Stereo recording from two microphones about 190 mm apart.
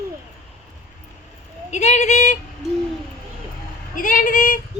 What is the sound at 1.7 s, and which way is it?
Speech, 35° left (ahead or behind).